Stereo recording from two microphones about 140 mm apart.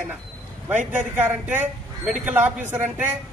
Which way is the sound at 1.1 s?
15° right (ahead or behind).